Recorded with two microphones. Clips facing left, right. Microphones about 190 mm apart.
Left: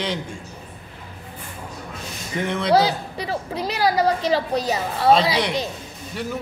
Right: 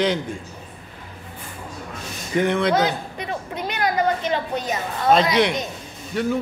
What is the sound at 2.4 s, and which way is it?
Speech, centre (ahead or behind).